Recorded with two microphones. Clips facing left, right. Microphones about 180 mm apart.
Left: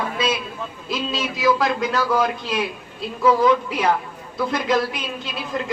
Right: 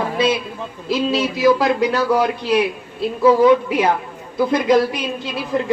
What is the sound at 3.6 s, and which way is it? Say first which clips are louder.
Speech: right 4 dB; 10° right (ahead or behind).